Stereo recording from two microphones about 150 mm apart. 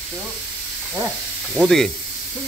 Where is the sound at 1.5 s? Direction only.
Centre (ahead or behind).